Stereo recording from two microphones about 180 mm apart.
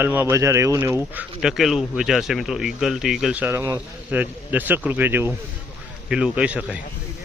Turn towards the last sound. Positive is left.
turn(degrees=-5)  # may be behind; listen again after turning